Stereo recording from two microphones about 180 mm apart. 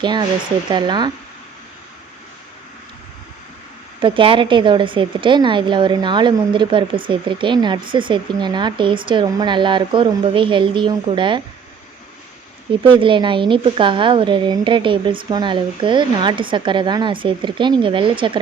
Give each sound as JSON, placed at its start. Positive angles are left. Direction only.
{"t": 0.0, "sound": "a woman's voice", "side_deg": -25}
{"t": 4.0, "sound": "a woman's voice", "side_deg": -30}
{"t": 12.8, "sound": "a woman's voice", "side_deg": -25}